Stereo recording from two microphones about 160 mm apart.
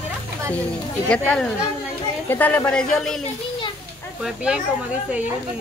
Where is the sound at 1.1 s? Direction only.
5° left (ahead or behind).